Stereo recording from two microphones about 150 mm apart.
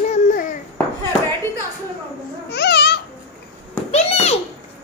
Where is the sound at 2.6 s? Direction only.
90° left.